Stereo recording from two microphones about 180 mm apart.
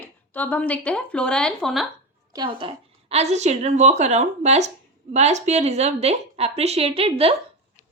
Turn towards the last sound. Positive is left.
turn(degrees=-30)  # may be behind; listen again after turning